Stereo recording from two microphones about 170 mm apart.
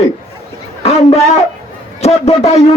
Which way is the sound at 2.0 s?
40° left (ahead or behind).